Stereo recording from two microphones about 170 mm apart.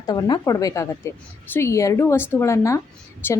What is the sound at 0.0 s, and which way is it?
A woman's voice, 25° left (ahead or behind).